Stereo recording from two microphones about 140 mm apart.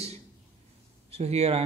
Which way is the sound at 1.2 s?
50° right (ahead or behind).